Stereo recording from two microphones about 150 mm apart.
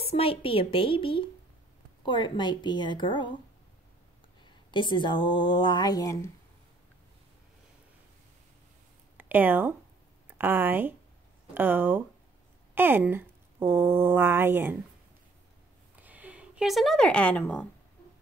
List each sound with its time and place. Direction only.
0.1 s speech: 40° left (ahead or behind)
4.6 s speech: 30° left (ahead or behind)
9.1 s speech: 15° right (ahead or behind)
16.0 s speech: 10° right (ahead or behind); by 17.6 s 10° left (ahead or behind)